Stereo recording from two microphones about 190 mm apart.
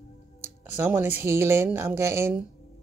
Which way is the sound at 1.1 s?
15° right (ahead or behind).